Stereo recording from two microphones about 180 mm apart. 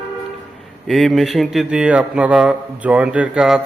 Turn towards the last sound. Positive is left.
turn(degrees=-5)  # may be behind; listen again after turning